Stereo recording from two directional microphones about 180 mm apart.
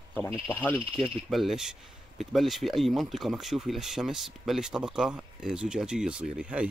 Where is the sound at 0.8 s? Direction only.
30° right (ahead or behind).